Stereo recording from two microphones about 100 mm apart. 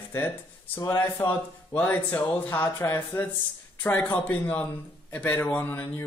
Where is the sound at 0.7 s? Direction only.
25° left (ahead or behind).